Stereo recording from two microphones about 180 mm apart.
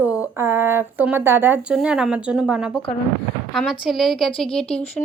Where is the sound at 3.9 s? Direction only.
Centre (ahead or behind).